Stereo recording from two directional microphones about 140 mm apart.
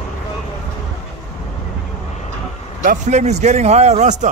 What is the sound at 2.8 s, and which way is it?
A man's voice, 65° right (ahead or behind).